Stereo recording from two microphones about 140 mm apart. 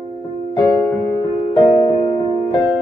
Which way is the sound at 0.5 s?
35° left (ahead or behind).